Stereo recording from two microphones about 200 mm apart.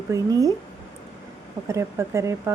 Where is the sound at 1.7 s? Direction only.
15° right (ahead or behind).